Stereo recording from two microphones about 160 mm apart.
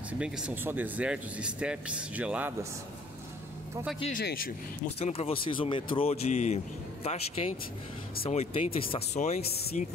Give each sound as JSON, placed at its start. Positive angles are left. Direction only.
{"t": 0.2, "sound": "speech", "side_deg": -10}
{"t": 4.1, "sound": "speech", "side_deg": 80}
{"t": 4.9, "sound": "speech", "side_deg": 40}